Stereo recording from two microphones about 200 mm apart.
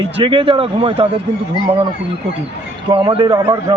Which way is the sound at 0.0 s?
25° right (ahead or behind).